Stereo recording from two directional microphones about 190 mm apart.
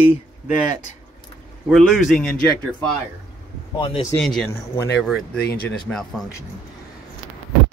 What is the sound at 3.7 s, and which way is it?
Speech, 25° left (ahead or behind).